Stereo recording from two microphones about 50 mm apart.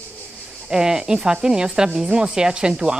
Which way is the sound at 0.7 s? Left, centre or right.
Centre.